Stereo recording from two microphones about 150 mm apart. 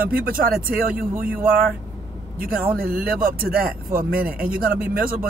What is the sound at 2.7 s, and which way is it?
Speech, 75° right (ahead or behind).